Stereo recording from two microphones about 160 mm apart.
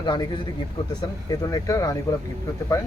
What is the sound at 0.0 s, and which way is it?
Speech, 30° left (ahead or behind).